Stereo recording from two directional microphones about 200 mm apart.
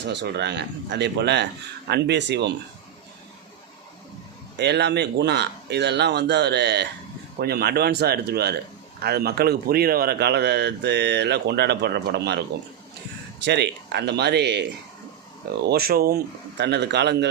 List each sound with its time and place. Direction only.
0.0 s speech: 60° right (ahead or behind)
4.5 s speech: 55° right (ahead or behind)